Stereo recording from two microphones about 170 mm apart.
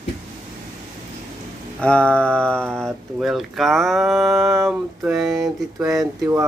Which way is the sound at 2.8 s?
Centre (ahead or behind).